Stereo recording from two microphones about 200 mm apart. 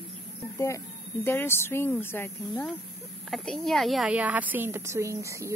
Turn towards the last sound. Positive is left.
turn(degrees=-15)  # may be behind; listen again after turning